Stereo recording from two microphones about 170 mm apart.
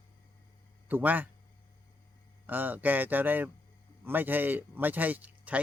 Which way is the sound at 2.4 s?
10° right (ahead or behind).